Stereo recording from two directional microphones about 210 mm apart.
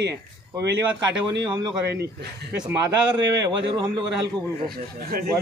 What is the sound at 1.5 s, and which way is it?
Speech, 20° right (ahead or behind).